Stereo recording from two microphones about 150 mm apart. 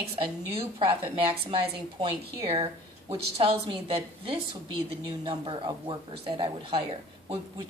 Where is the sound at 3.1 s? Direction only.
35° right (ahead or behind).